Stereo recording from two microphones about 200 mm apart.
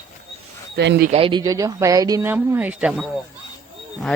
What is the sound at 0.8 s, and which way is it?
Speech, 60° right (ahead or behind).